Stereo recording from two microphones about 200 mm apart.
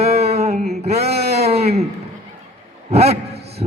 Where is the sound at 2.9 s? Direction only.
30° right (ahead or behind).